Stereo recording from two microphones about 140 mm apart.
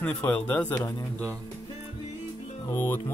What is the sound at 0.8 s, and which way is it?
Speech, 25° left (ahead or behind).